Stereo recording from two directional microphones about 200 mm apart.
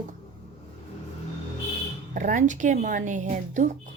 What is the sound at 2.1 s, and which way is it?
A woman's voice, 40° right (ahead or behind).